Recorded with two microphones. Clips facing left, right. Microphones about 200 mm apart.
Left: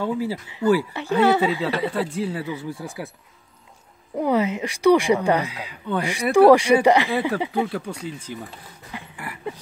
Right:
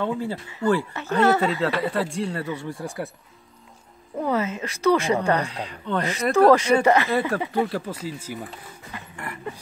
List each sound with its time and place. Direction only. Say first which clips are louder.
0.0 s speech: left 2 dB; 5° left (ahead or behind)
4.2 s speech: left 4 dB; 15° left (ahead or behind)
7.5 s speech: even; centre (ahead or behind)
8.9 s a sound: left 1 dB; 5° left (ahead or behind)